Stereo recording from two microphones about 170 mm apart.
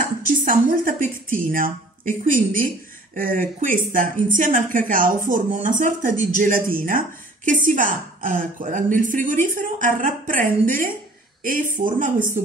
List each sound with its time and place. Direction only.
0.5 s speech: 55° right (ahead or behind)